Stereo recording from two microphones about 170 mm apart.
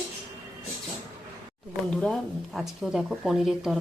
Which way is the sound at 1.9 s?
5° left (ahead or behind).